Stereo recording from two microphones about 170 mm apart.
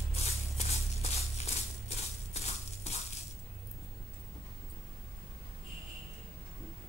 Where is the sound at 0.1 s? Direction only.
40° left (ahead or behind).